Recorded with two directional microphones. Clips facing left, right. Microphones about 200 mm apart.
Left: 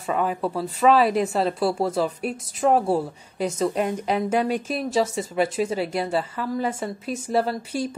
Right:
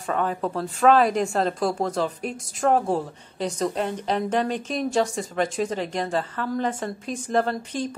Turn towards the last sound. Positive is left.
turn(degrees=10)  # may be behind; listen again after turning